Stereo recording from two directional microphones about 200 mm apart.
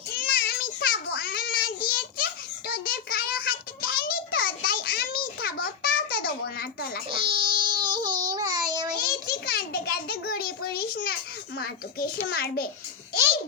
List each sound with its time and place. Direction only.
0.1 s child singing: 50° left (ahead or behind)
7.1 s baby cry: 25° right (ahead or behind)
8.3 s child singing: 20° right (ahead or behind)
9.0 s a sound: 50° left (ahead or behind)
11.5 s a child's voice: 50° left (ahead or behind)